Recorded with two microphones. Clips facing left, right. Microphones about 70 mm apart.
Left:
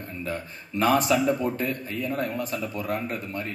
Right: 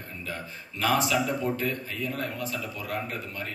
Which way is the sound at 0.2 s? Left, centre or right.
Left.